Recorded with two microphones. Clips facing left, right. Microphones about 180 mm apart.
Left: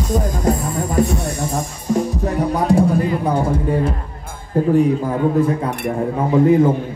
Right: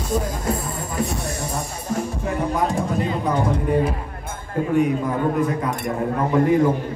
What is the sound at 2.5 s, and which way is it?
Music, 35° left (ahead or behind).